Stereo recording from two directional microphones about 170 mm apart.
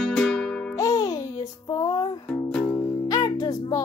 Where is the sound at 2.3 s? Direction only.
5° left (ahead or behind).